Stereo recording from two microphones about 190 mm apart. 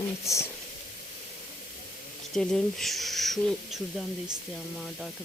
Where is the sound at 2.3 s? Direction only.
5° left (ahead or behind).